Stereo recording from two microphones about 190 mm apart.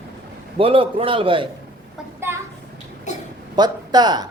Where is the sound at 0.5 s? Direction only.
30° right (ahead or behind).